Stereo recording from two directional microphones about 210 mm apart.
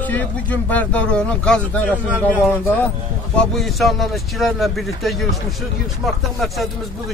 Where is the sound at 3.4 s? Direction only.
Centre (ahead or behind).